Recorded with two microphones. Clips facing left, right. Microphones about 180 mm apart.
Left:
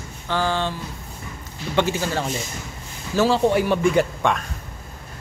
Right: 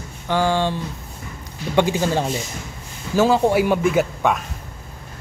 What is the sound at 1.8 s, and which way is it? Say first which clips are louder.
A man's voice: right 4 dB; 15° right (ahead or behind).